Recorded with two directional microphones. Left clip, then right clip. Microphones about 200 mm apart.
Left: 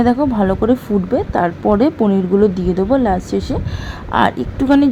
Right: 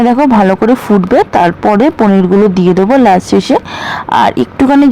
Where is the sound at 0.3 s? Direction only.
20° right (ahead or behind).